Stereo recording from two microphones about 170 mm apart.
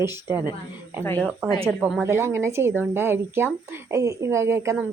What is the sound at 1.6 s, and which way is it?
Speech, centre (ahead or behind).